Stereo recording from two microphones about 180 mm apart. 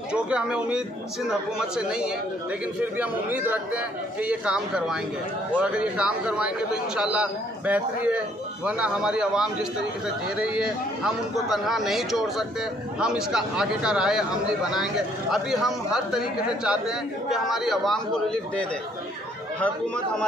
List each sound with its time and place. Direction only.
0.1 s a man's voice: 5° right (ahead or behind)